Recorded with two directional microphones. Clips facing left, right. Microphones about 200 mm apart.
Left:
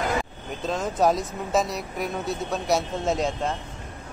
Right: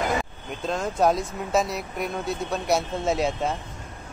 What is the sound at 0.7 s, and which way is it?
Speech, centre (ahead or behind).